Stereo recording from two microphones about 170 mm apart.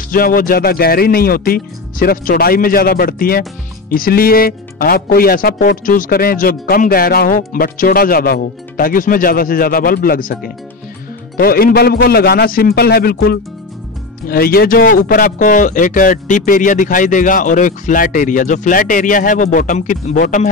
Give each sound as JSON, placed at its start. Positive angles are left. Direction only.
{"t": 0.1, "sound": "speech", "side_deg": 55}